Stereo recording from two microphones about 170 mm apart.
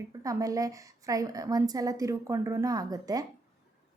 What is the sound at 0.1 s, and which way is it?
A woman's voice, 20° right (ahead or behind).